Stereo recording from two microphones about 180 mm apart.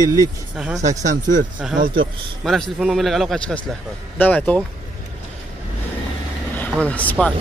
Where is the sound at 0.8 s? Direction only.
45° right (ahead or behind).